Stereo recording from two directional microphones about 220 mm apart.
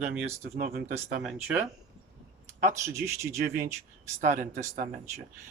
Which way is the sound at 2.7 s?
15° right (ahead or behind).